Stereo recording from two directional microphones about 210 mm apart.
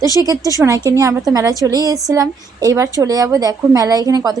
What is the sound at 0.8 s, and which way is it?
A woman's voice, 15° right (ahead or behind).